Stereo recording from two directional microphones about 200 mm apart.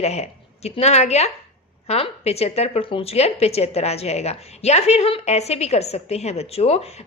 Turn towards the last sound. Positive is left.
turn(degrees=30)  # may be behind; listen again after turning